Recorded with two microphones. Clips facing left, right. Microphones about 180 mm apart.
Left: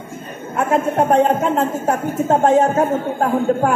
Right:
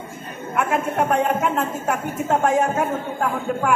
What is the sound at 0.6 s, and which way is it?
A woman's voice, 30° left (ahead or behind).